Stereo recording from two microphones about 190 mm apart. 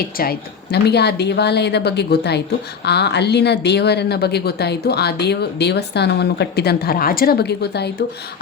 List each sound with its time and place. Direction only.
0.0 s a woman's voice: 55° left (ahead or behind)